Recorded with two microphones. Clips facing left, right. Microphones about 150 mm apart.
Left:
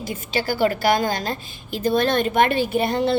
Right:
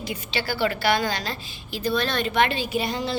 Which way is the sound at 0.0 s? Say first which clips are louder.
Left 4 dB; 45° left (ahead or behind).